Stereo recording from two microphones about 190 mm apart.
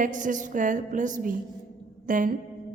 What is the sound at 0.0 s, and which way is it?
A woman's voice, 45° right (ahead or behind).